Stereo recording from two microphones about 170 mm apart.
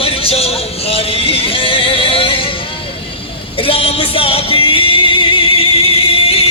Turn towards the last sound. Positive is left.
turn(degrees=35)  # may be behind; listen again after turning